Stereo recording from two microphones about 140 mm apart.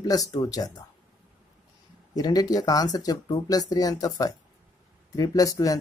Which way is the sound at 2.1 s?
25° left (ahead or behind).